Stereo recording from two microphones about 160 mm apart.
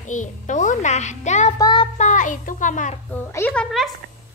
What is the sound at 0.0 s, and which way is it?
A child's voice, 50° left (ahead or behind).